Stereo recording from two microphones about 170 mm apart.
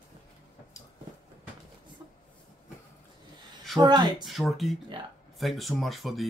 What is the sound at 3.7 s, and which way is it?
Speech, 25° right (ahead or behind).